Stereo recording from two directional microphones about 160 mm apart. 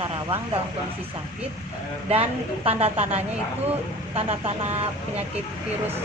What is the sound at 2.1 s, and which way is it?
Speech, 40° right (ahead or behind).